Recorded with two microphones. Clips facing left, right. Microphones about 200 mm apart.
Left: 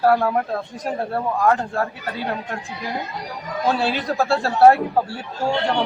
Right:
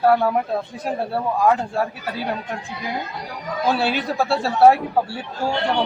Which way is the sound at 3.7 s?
5° right (ahead or behind).